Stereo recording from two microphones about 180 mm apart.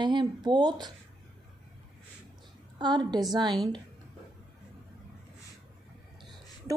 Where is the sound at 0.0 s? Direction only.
25° right (ahead or behind).